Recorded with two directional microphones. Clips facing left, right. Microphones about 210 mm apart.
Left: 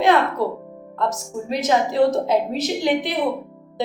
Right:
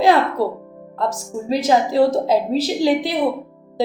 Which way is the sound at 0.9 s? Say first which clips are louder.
Right 1 dB; 35° right (ahead or behind).